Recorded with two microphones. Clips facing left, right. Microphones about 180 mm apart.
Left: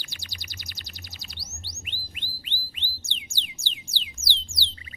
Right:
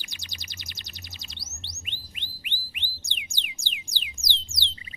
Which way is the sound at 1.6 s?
20° right (ahead or behind).